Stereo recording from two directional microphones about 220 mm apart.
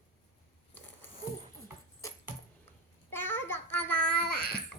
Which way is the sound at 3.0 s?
10° left (ahead or behind).